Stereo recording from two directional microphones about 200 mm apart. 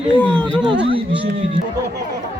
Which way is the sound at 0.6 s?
25° right (ahead or behind).